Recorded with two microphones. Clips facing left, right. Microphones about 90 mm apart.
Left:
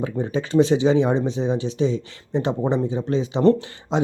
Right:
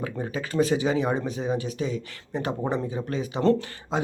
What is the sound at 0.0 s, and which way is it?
Speech, 25° left (ahead or behind).